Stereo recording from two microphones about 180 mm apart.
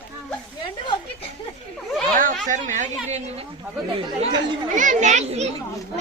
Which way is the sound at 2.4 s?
45° right (ahead or behind).